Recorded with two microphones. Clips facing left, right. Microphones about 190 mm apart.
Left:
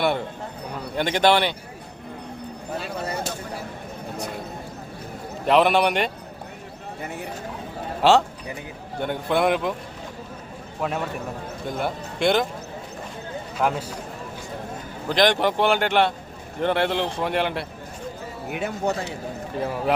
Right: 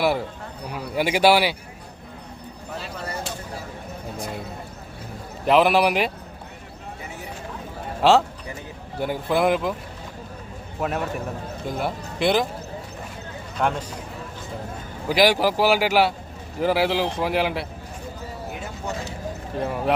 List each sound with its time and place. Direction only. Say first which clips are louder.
0.7 s a man's voice: right 2 dB; 10° right (ahead or behind)
5.5 s a man's voice: right 1 dB; centre (ahead or behind)
8.0 s a man's voice: even; centre (ahead or behind)
10.8 s a man's voice: right 1 dB; centre (ahead or behind)
13.6 s a man's voice: even; 5° left (ahead or behind)
15.1 s a man's voice: right 1 dB; 5° right (ahead or behind)
18.5 s speech: left 9 dB; 65° left (ahead or behind)
19.5 s a man's voice: even; centre (ahead or behind)